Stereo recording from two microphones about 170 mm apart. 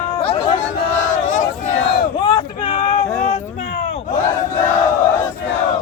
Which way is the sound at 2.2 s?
30° left (ahead or behind).